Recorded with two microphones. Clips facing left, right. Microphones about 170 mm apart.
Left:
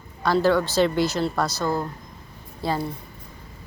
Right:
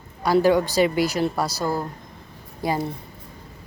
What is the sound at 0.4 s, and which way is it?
Speech, 15° right (ahead or behind).